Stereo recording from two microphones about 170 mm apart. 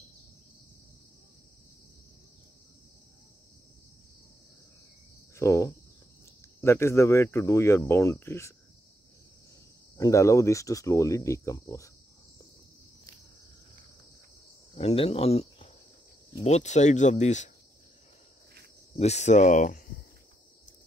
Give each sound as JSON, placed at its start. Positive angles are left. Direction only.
{"t": 5.3, "sound": "speech", "side_deg": 15}
{"t": 9.9, "sound": "speech", "side_deg": 20}
{"t": 14.8, "sound": "speech", "side_deg": 35}
{"t": 18.9, "sound": "speech", "side_deg": 40}